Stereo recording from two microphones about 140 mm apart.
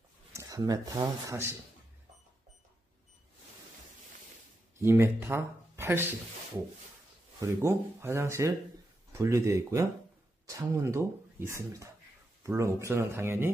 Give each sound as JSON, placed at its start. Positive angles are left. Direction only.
{"t": 0.3, "sound": "speech", "side_deg": -25}
{"t": 4.7, "sound": "speech", "side_deg": -20}
{"t": 7.3, "sound": "speech", "side_deg": -20}